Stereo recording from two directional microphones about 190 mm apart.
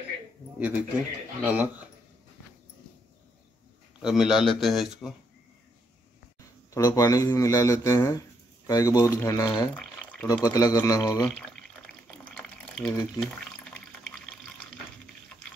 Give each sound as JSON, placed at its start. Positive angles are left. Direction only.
{"t": 0.6, "sound": "speech", "side_deg": -10}
{"t": 4.0, "sound": "a man's voice", "side_deg": 0}
{"t": 6.7, "sound": "a man's voice", "side_deg": 20}
{"t": 11.2, "sound": "water", "side_deg": 5}